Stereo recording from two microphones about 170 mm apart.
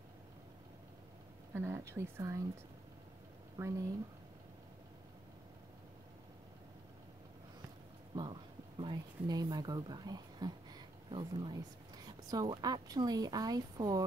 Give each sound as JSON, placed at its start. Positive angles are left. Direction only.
{"t": 1.5, "sound": "speech", "side_deg": -15}
{"t": 3.6, "sound": "speech", "side_deg": -15}
{"t": 8.2, "sound": "a sound", "side_deg": -30}
{"t": 12.3, "sound": "speech", "side_deg": -20}